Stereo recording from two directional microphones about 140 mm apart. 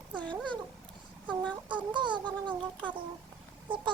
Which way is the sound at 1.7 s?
35° right (ahead or behind).